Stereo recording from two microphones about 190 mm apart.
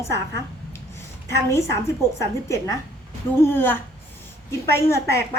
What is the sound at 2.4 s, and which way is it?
A woman's voice, 15° left (ahead or behind).